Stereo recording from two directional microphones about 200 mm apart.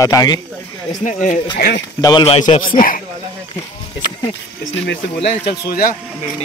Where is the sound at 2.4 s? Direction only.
40° left (ahead or behind).